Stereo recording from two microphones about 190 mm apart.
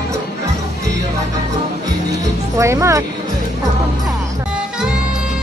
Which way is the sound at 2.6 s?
15° right (ahead or behind).